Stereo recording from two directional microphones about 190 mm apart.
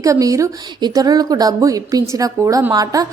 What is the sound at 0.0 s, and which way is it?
A woman's voice, 20° right (ahead or behind).